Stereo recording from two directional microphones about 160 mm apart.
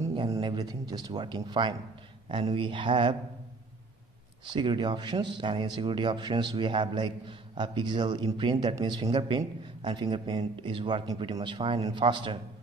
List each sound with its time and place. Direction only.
0.4 s speech: 25° right (ahead or behind)
4.5 s speech: 30° right (ahead or behind)